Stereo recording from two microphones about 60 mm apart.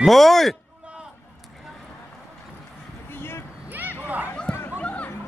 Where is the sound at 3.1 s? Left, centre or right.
Left.